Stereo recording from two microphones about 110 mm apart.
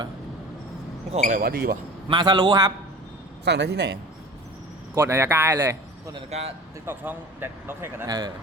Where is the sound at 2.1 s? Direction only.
45° right (ahead or behind).